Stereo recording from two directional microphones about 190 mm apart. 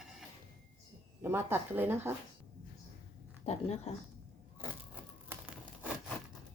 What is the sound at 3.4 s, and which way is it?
Speech, 35° left (ahead or behind).